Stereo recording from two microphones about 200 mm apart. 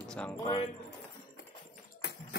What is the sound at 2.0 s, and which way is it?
Clip-clop, 60° left (ahead or behind).